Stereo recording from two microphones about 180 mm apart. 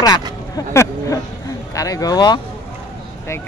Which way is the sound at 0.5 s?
15° left (ahead or behind).